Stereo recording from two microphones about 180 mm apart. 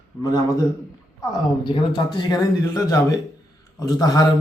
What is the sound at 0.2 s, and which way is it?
A man's voice, 20° left (ahead or behind).